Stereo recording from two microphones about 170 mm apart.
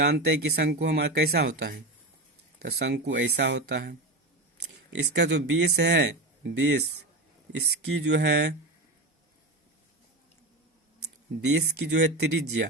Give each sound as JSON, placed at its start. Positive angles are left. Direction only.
{"t": 0.0, "sound": "speech", "side_deg": -70}
{"t": 5.1, "sound": "speech", "side_deg": -90}
{"t": 7.9, "sound": "speech", "side_deg": -90}
{"t": 11.3, "sound": "speech", "side_deg": -90}